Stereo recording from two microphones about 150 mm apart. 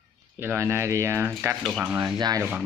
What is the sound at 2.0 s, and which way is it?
Speech, 25° right (ahead or behind).